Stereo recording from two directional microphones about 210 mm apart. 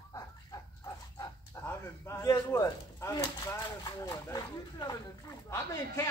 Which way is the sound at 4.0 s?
20° left (ahead or behind).